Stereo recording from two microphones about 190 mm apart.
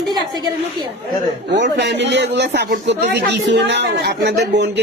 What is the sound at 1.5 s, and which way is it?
A man's voice, 70° right (ahead or behind).